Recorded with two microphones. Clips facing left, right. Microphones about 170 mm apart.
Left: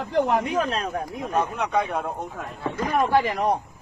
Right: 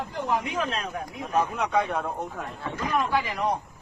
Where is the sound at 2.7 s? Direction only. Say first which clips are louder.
Left 5 dB; 50° left (ahead or behind).